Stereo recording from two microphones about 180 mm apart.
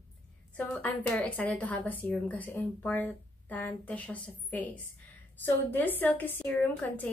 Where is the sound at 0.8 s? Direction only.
10° left (ahead or behind).